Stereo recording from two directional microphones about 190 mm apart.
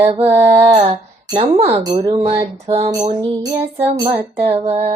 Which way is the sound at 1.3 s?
25° right (ahead or behind).